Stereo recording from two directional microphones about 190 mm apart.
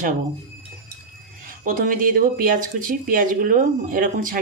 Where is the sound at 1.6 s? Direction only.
45° right (ahead or behind).